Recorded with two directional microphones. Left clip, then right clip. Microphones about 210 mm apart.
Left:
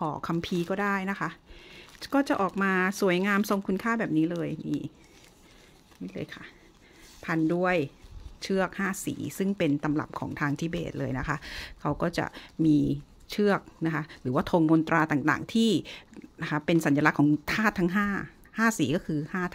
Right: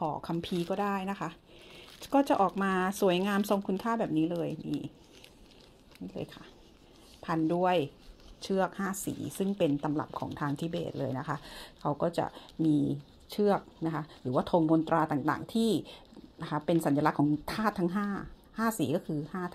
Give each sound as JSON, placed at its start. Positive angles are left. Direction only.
{"t": 0.2, "sound": "speech", "side_deg": 35}
{"t": 6.1, "sound": "speech", "side_deg": 30}
{"t": 9.8, "sound": "speech", "side_deg": 45}